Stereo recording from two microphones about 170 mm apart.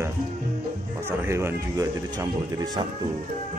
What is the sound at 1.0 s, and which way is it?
Speech, 15° right (ahead or behind).